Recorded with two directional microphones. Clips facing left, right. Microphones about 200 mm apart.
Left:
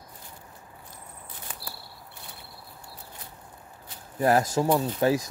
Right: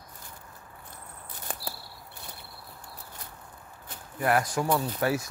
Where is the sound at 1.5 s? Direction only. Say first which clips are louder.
Right 7 dB; 45° right (ahead or behind).